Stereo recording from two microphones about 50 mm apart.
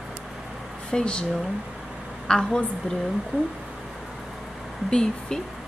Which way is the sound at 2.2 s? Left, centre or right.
Centre.